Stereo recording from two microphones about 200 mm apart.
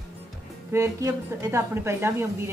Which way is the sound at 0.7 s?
15° right (ahead or behind).